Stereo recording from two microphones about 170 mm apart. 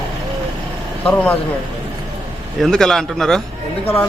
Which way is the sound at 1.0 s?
10° left (ahead or behind).